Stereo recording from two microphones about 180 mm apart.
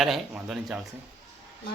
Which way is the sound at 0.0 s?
Centre (ahead or behind).